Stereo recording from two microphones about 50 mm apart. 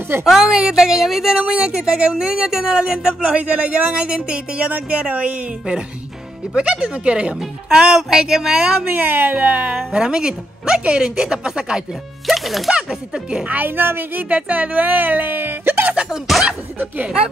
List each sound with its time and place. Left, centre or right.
0.2 s a woman's voice: centre
1.4 s speech: right
8.8 s speech: right
9.8 s a woman's voice: centre
12.3 s speech: centre
12.7 s a woman's voice: centre
13.5 s a woman's voice: right
14.3 s speech: right
16.1 s speech: centre